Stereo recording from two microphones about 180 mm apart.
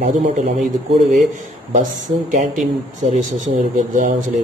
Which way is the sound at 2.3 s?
45° right (ahead or behind).